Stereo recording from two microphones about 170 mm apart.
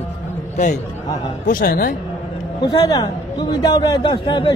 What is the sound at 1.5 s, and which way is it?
Speech, 55° left (ahead or behind).